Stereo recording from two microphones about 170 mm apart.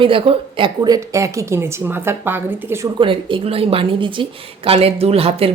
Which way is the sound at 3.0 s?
30° right (ahead or behind).